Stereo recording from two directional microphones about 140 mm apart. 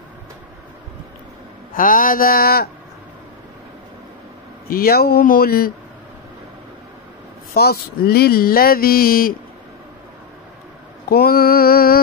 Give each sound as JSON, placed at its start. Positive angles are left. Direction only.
{"t": 1.7, "sound": "speech", "side_deg": 80}
{"t": 4.6, "sound": "speech", "side_deg": 90}
{"t": 7.5, "sound": "speech", "side_deg": 90}
{"t": 11.1, "sound": "mantra", "side_deg": 90}